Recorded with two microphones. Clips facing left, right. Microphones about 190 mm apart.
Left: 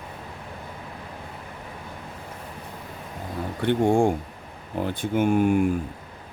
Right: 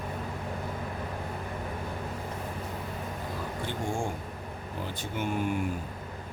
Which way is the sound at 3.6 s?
60° left (ahead or behind).